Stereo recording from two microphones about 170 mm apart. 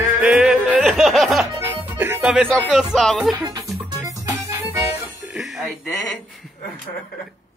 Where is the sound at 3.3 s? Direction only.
20° right (ahead or behind).